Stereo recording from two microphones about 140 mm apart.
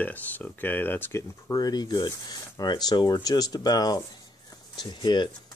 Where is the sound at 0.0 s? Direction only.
10° left (ahead or behind).